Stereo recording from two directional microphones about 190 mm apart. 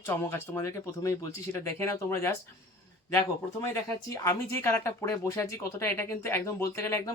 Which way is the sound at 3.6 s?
15° left (ahead or behind).